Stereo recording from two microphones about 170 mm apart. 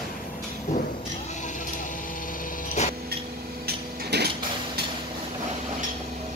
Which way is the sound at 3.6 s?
70° right (ahead or behind).